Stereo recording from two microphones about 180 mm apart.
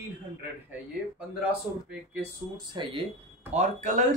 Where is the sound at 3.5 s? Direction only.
45° right (ahead or behind).